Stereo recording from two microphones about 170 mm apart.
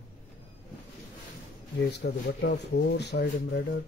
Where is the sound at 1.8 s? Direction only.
80° left.